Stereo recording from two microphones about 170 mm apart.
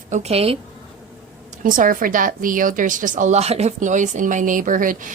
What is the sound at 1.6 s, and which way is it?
A woman's voice, 50° right (ahead or behind).